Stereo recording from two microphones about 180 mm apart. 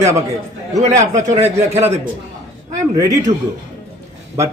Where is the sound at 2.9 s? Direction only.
20° right (ahead or behind).